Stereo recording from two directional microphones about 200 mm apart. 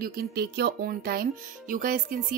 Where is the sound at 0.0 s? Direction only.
50° right (ahead or behind).